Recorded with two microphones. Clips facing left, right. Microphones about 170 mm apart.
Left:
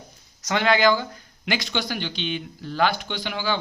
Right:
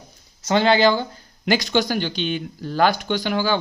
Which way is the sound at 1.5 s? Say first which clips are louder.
Right 7 dB; 40° right (ahead or behind).